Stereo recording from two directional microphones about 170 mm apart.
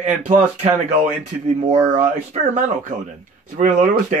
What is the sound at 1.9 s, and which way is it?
Speech, 45° right (ahead or behind).